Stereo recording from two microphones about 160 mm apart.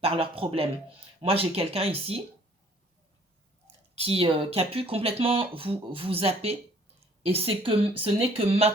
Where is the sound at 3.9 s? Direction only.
35° right (ahead or behind).